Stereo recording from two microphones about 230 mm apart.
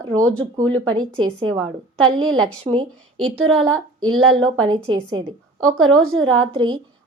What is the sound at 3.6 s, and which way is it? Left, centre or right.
Speech, right.